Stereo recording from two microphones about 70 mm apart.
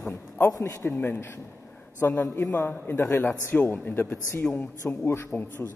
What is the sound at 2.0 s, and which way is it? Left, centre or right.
Speech, left.